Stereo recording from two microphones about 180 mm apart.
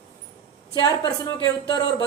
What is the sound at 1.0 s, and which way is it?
Speech, 25° left (ahead or behind).